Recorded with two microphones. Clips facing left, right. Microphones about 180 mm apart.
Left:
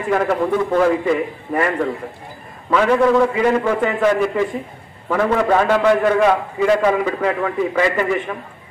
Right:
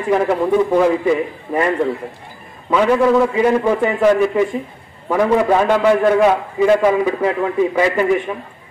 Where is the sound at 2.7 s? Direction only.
10° right (ahead or behind).